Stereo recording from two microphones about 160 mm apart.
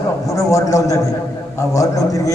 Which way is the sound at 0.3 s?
20° left (ahead or behind).